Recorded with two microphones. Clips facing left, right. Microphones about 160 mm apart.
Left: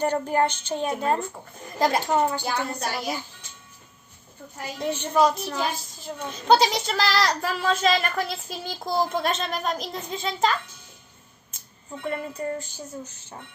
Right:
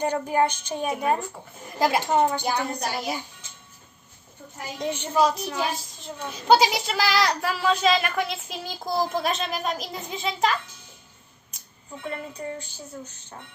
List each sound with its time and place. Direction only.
0.0 s a woman's voice: 15° right (ahead or behind)
4.8 s a woman's voice: 15° right (ahead or behind)
5.1 s a woman's voice: centre (ahead or behind)
12.0 s a woman's voice: centre (ahead or behind)